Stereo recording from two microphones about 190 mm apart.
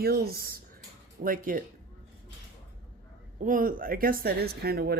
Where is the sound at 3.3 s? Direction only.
45° right (ahead or behind).